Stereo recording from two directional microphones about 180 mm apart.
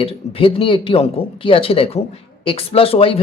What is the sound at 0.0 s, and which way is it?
Speech, 30° left (ahead or behind).